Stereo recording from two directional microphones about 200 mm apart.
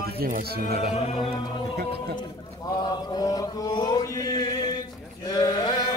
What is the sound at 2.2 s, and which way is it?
Mantra, 20° left (ahead or behind).